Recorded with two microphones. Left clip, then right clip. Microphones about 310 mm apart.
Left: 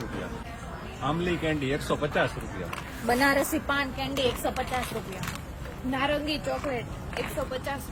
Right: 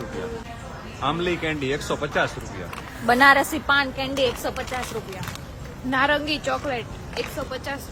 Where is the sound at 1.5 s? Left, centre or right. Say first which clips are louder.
Right 3 dB; centre.